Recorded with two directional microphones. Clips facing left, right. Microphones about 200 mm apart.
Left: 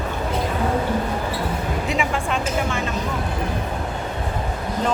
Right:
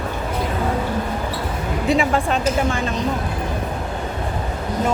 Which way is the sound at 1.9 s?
35° right (ahead or behind).